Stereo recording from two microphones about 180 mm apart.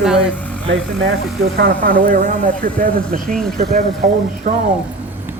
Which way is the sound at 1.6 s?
55° right (ahead or behind).